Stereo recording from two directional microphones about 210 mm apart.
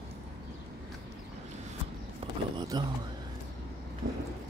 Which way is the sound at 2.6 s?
20° right (ahead or behind).